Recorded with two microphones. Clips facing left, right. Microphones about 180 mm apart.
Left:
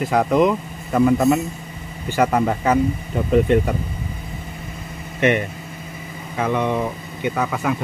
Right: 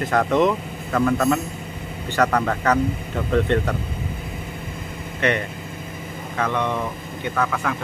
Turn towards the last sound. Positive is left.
turn(degrees=15)  # may be behind; listen again after turning